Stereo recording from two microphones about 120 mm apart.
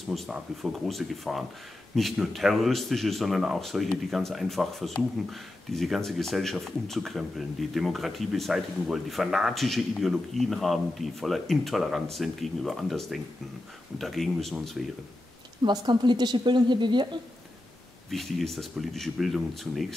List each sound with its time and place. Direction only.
0.1 s speech: centre (ahead or behind)
15.6 s a woman's voice: 35° right (ahead or behind)
18.1 s speech: centre (ahead or behind)